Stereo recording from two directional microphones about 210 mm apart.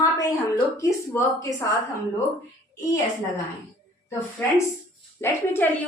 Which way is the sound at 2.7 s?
15° left (ahead or behind).